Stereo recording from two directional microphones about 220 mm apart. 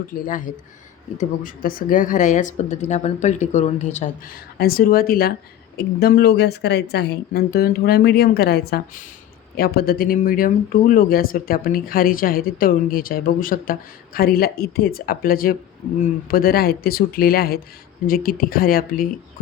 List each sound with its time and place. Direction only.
0.1 s speech: 40° left (ahead or behind)
4.5 s a woman's voice: 45° left (ahead or behind)